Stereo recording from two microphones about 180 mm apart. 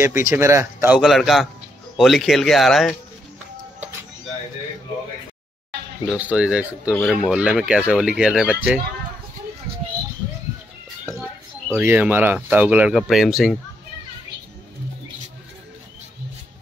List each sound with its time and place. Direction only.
0.0 s speech: 15° right (ahead or behind)
0.9 s speech: centre (ahead or behind)
6.0 s speech: 5° right (ahead or behind)
11.7 s speech: 10° right (ahead or behind)